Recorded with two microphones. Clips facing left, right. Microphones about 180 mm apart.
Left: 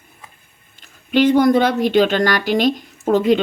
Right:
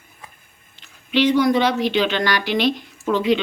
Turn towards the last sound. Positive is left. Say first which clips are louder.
# left 4 dB
turn(degrees=45)  # may be behind; listen again after turning